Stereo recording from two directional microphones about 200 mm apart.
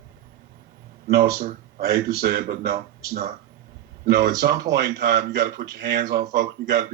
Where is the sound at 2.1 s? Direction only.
55° right (ahead or behind).